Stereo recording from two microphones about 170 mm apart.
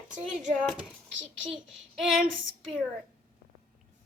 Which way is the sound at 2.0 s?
Centre (ahead or behind).